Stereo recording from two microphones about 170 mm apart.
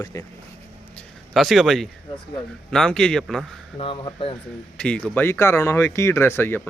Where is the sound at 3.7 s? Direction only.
30° left (ahead or behind).